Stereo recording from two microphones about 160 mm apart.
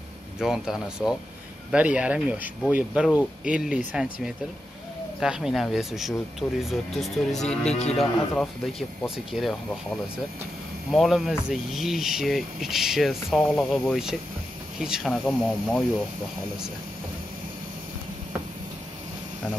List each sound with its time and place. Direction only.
0.4 s speech: 5° right (ahead or behind)
7.7 s a man's voice: 40° left (ahead or behind)
8.0 s speech: centre (ahead or behind)
10.9 s speech: centre (ahead or behind)